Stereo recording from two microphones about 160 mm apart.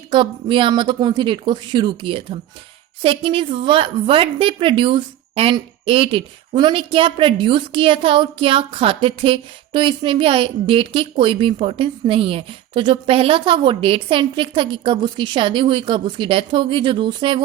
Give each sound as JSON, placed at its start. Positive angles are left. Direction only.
{"t": 0.1, "sound": "a woman's voice", "side_deg": -30}